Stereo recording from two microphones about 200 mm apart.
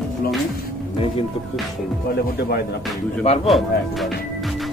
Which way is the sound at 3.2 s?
30° left (ahead or behind).